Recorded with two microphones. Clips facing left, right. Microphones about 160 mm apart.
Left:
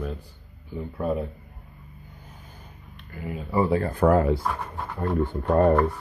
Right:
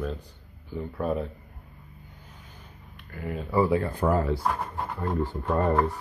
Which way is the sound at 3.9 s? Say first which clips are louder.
Left 5 dB; 65° left (ahead or behind).